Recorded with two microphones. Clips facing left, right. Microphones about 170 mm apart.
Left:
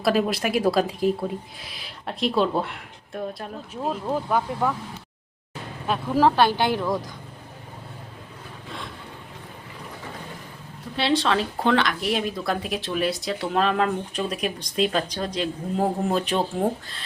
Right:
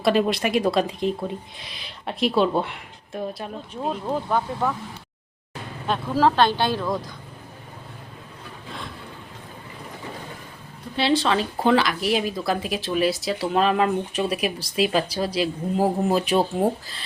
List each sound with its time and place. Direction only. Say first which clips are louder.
0.0 s a woman's voice: right 2 dB; centre (ahead or behind)
5.9 s speech: even; 15° left (ahead or behind)
10.9 s a woman's voice: right 1 dB; centre (ahead or behind)